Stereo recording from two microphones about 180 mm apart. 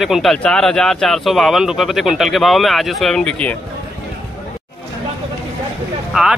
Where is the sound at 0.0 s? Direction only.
Centre (ahead or behind).